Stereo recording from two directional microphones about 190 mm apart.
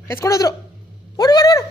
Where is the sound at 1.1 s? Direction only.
20° left (ahead or behind).